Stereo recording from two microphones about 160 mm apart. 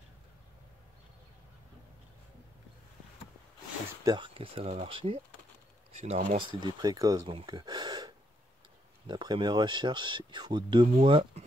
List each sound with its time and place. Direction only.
4.0 s speech: 30° right (ahead or behind)
7.4 s gasp: 25° right (ahead or behind)
9.0 s speech: 30° right (ahead or behind)